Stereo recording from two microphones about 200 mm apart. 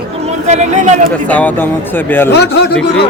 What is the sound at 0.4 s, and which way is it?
Speech, 35° right (ahead or behind).